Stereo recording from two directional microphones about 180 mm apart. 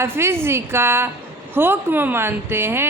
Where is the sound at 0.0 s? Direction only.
15° right (ahead or behind).